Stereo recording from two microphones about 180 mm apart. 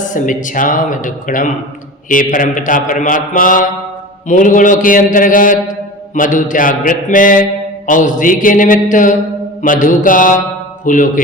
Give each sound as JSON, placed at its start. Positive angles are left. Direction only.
{"t": 0.1, "sound": "speech", "side_deg": 45}